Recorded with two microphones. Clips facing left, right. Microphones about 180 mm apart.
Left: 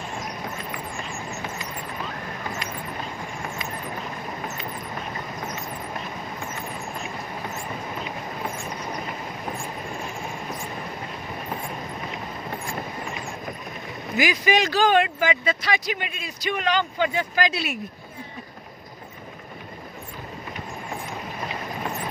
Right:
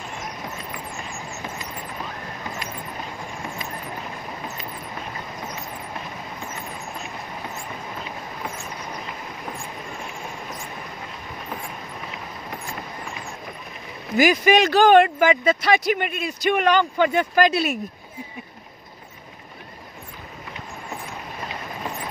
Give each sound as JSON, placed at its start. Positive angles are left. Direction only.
{"t": 14.1, "sound": "speech", "side_deg": -50}